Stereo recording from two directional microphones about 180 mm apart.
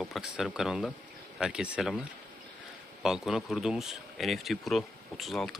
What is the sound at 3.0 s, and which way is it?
Speech, centre (ahead or behind).